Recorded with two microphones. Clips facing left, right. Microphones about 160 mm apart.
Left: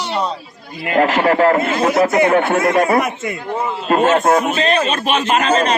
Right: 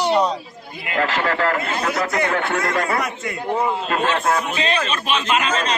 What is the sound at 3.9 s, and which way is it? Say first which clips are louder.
A man's voice: left 12 dB; 40° left (ahead or behind).